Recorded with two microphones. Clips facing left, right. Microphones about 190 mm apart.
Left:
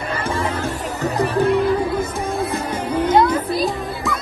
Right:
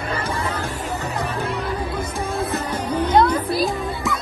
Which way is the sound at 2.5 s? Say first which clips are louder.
Left 2 dB; 10° left (ahead or behind).